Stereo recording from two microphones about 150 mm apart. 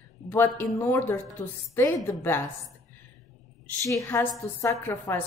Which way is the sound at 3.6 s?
20° left (ahead or behind).